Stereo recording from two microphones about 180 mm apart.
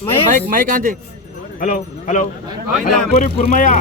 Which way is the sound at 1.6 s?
45° left (ahead or behind).